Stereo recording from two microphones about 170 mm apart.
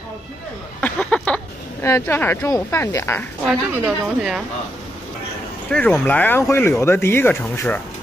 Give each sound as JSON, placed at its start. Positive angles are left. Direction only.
{"t": 0.7, "sound": "a sound", "side_deg": 5}
{"t": 1.9, "sound": "speech", "side_deg": 15}
{"t": 3.8, "sound": "speech", "side_deg": -5}
{"t": 5.7, "sound": "speech", "side_deg": 10}